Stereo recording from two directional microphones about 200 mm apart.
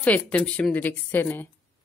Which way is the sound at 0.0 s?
5° left (ahead or behind).